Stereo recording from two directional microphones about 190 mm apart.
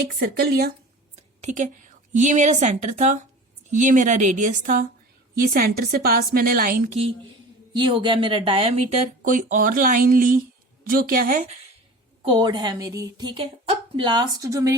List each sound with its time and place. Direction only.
0.2 s a woman's voice: 55° right (ahead or behind)
1.1 s a woman's voice: 40° right (ahead or behind)
7.7 s a woman's voice: 25° right (ahead or behind); by 11.5 s 45° right (ahead or behind)
12.2 s a woman's voice: 25° right (ahead or behind)